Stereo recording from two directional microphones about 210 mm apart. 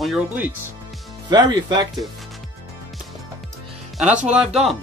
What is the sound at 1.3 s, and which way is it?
Speech, 20° right (ahead or behind).